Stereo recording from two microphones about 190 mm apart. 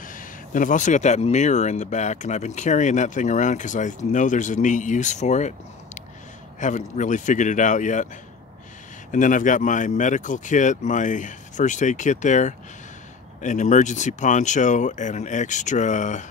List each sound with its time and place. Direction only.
0.0 s speech: 45° left (ahead or behind)
6.6 s speech: 40° left (ahead or behind)
9.1 s speech: 45° left (ahead or behind)